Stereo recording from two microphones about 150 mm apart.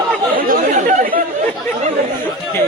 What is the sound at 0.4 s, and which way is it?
Chatter, 65° right (ahead or behind).